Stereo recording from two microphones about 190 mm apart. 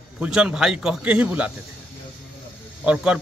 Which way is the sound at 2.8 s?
5° right (ahead or behind).